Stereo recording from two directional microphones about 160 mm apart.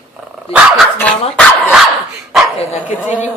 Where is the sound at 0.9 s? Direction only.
5° left (ahead or behind).